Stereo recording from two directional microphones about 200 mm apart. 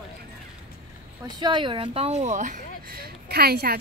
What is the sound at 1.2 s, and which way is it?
Speech, 20° right (ahead or behind).